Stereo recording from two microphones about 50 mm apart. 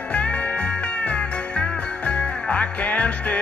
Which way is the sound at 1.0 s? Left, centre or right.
Left.